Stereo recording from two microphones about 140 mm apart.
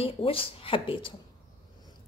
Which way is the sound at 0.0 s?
40° left (ahead or behind).